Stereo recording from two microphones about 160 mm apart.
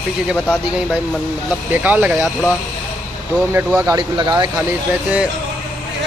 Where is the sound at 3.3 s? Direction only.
15° right (ahead or behind).